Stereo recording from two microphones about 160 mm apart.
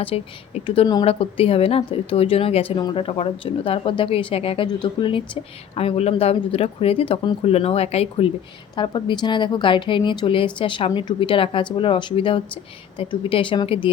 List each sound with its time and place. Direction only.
0.0 s speech: 35° left (ahead or behind)